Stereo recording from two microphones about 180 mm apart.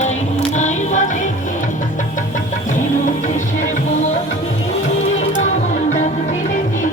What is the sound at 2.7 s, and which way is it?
Music, 45° left (ahead or behind).